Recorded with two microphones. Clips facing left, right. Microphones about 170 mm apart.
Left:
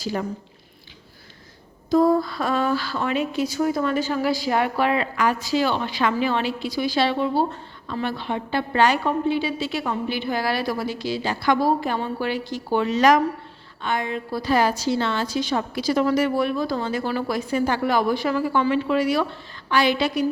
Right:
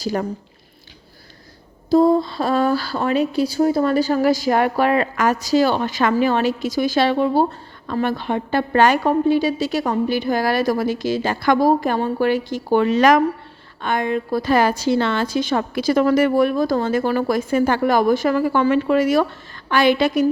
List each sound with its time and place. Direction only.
0.0 s speech: 45° right (ahead or behind)
1.9 s speech: 25° right (ahead or behind); by 20.2 s 50° right (ahead or behind)